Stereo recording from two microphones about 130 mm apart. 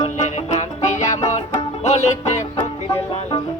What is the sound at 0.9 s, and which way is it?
Music, 60° left (ahead or behind).